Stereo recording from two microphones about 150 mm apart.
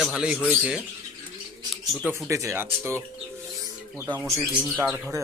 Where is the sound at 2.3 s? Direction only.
20° right (ahead or behind).